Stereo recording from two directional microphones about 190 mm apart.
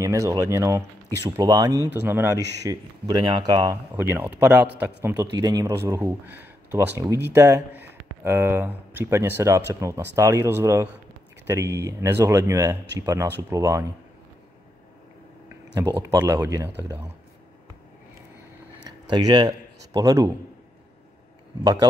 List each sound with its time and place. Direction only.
0.0 s speech: 15° right (ahead or behind)
15.4 s a sound: 20° right (ahead or behind)
16.0 s speech: 15° right (ahead or behind)
18.9 s speech: 20° right (ahead or behind)